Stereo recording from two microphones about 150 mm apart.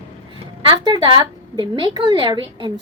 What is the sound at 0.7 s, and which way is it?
A woman's voice, 30° right (ahead or behind).